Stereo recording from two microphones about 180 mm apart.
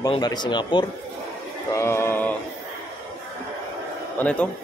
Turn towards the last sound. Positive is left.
turn(degrees=5)  # may be behind; listen again after turning